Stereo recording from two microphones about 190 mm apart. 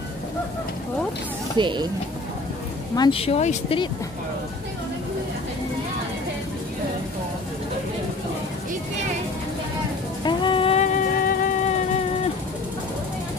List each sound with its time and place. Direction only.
1.6 s speech: 25° right (ahead or behind)
3.0 s speech: 30° left (ahead or behind)
10.2 s music: 25° left (ahead or behind); by 11.7 s 45° left (ahead or behind)